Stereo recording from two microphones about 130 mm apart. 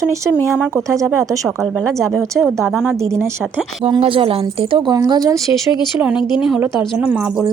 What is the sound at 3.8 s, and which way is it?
Speech, 45° right (ahead or behind).